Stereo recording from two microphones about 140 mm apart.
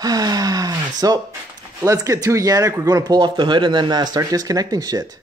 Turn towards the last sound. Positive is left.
turn(degrees=-25)  # may be behind; listen again after turning